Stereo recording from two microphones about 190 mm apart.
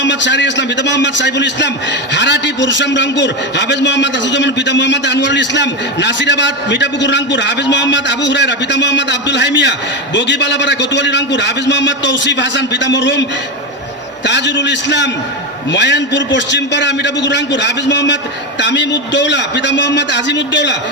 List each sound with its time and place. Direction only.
0.0 s a man's voice: 70° left (ahead or behind)
14.3 s a man's voice: 70° left (ahead or behind)